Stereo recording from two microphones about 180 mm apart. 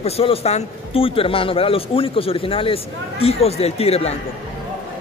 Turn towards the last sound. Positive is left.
turn(degrees=35)  # may be behind; listen again after turning